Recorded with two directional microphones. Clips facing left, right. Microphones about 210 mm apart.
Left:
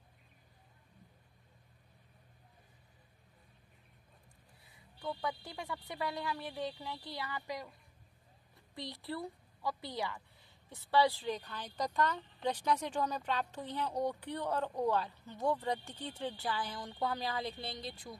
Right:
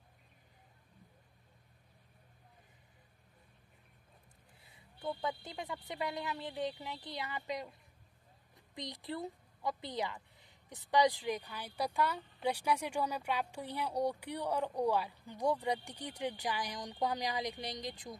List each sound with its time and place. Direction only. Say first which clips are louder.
5.0 s speech: right 1 dB; 20° right (ahead or behind)